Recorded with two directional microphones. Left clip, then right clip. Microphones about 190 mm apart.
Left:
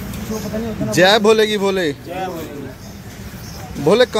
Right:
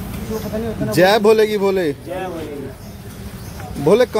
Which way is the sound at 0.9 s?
10° right (ahead or behind).